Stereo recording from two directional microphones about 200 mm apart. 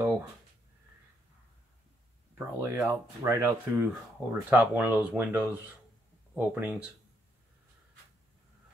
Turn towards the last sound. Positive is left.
turn(degrees=-5)  # may be behind; listen again after turning